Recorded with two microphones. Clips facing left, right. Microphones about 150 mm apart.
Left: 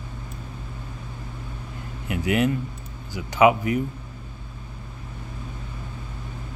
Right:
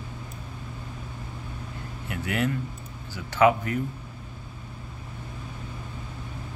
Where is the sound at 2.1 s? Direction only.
15° left (ahead or behind).